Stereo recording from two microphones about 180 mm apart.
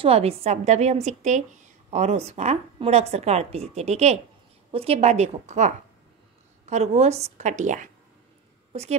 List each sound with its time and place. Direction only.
0.0 s a woman's voice: 35° right (ahead or behind)